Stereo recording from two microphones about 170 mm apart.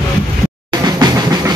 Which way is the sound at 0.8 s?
25° right (ahead or behind).